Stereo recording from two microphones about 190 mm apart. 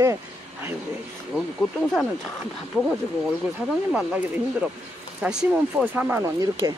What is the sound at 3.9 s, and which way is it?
Speech, 5° right (ahead or behind).